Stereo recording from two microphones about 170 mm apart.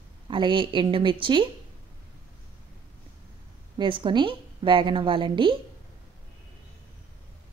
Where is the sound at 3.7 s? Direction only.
30° right (ahead or behind).